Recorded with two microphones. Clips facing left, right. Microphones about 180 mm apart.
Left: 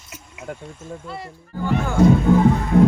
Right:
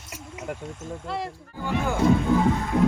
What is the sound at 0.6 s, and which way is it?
Speech, centre (ahead or behind).